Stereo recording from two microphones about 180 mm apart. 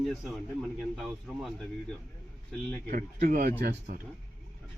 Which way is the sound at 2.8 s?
50° right (ahead or behind).